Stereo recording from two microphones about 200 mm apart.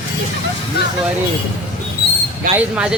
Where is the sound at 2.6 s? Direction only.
5° right (ahead or behind).